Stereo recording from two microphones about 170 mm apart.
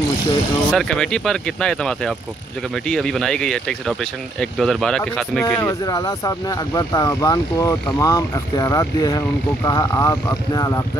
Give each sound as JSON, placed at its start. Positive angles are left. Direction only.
{"t": 0.7, "sound": "speech", "side_deg": 5}
{"t": 5.4, "sound": "speech", "side_deg": 15}